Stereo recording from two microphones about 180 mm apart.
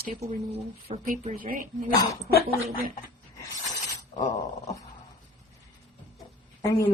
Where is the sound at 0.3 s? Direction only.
35° right (ahead or behind).